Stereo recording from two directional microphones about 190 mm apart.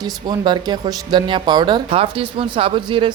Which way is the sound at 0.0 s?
20° right (ahead or behind).